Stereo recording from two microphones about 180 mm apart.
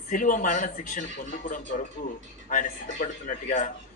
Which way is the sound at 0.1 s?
45° left (ahead or behind).